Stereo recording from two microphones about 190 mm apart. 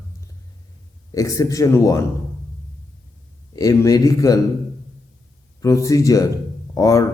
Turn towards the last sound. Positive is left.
turn(degrees=15)  # may be behind; listen again after turning